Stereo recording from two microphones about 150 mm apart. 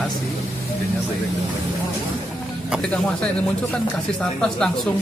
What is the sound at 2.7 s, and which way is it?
Speech, 5° left (ahead or behind).